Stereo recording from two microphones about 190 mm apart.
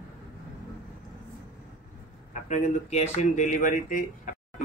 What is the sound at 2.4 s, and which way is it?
Speech, 35° left (ahead or behind).